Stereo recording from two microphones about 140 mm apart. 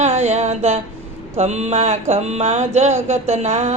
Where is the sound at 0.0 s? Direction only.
55° right (ahead or behind).